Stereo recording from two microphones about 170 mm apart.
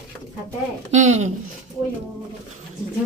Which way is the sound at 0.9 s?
45° right (ahead or behind).